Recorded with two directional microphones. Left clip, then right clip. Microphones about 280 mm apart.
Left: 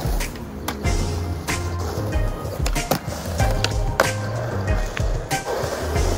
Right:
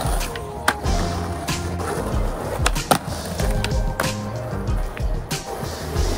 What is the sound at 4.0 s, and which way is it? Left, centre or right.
Music, left.